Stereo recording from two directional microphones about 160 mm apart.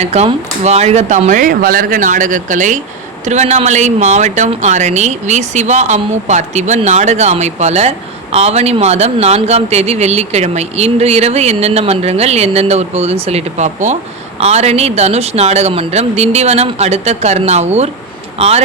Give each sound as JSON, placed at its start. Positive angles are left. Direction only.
{"t": 0.0, "sound": "speech", "side_deg": -40}